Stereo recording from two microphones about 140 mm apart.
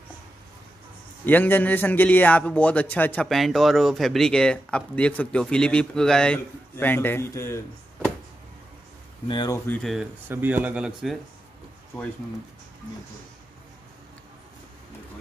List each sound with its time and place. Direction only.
1.2 s speech: 15° left (ahead or behind)
9.3 s speech: 30° left (ahead or behind)
9.7 s speech: centre (ahead or behind)
10.2 s speech: 15° right (ahead or behind)